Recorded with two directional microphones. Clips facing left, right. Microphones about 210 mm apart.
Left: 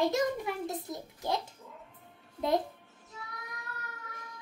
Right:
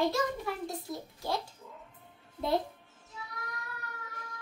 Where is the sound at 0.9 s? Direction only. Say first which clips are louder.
Right 1 dB; 20° left (ahead or behind).